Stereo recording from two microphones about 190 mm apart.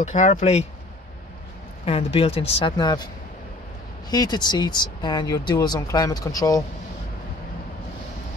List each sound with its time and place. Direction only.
0.0 s speech: 40° left (ahead or behind)
1.9 s speech: 30° left (ahead or behind)
4.1 s speech: 20° left (ahead or behind)